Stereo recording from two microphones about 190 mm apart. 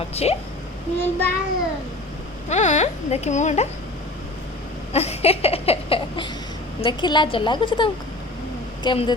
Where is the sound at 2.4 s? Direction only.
40° left (ahead or behind).